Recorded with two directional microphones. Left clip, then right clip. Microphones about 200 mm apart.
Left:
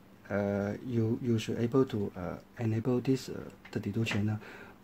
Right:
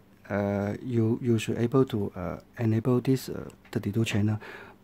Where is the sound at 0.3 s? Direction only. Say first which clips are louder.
Right 3 dB; 25° right (ahead or behind).